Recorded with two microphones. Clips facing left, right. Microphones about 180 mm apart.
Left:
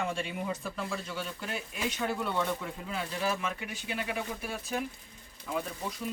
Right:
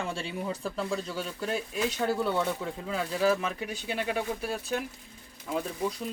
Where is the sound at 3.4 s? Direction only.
35° right (ahead or behind).